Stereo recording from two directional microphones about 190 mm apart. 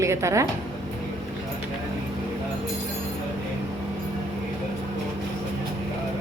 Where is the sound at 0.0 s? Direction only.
15° right (ahead or behind).